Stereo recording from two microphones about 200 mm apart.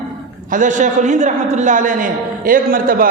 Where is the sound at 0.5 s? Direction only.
40° right (ahead or behind).